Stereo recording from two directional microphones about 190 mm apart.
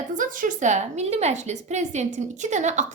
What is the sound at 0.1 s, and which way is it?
A woman's voice, 45° right (ahead or behind).